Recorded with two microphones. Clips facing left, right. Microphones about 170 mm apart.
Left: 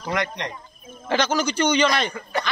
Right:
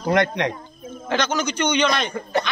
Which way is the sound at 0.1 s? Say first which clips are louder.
Right 7 dB; 55° right (ahead or behind).